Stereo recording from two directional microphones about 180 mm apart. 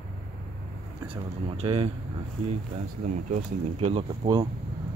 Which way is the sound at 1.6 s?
30° right (ahead or behind).